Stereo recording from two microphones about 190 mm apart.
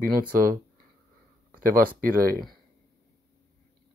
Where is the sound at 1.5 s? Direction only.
50° right (ahead or behind).